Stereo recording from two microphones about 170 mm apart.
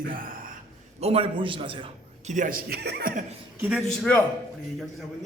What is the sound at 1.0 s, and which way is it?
Speech, 35° right (ahead or behind).